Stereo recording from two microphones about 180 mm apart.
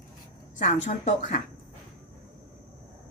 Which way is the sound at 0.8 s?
40° left (ahead or behind).